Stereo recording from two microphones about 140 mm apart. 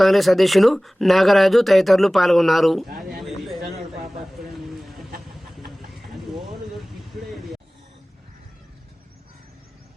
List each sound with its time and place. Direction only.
0.0 s speech: centre (ahead or behind)
3.2 s a sound: centre (ahead or behind)
5.3 s vehicle: centre (ahead or behind)